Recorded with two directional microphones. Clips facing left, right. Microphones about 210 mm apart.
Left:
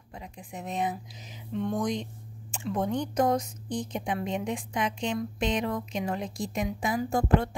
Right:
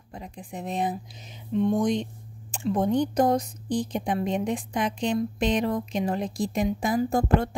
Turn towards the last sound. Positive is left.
turn(degrees=-40)  # may be behind; listen again after turning